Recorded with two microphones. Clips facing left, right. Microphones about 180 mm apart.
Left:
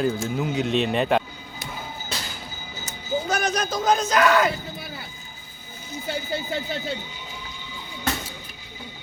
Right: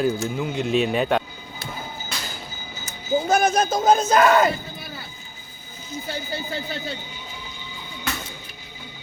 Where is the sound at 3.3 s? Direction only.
50° right (ahead or behind).